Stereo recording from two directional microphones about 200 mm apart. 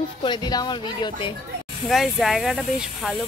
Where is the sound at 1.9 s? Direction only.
Centre (ahead or behind).